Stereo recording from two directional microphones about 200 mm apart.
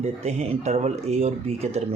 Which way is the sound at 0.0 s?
35° right (ahead or behind).